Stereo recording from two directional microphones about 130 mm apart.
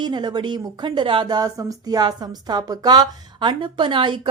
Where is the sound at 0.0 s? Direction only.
35° right (ahead or behind).